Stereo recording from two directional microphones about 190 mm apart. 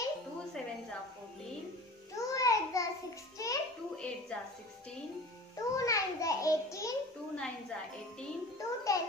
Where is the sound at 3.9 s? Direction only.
5° left (ahead or behind).